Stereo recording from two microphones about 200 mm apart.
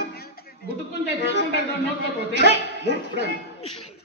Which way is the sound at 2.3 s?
60° right (ahead or behind).